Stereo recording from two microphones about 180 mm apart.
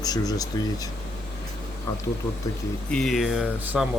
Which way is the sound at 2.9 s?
Centre (ahead or behind).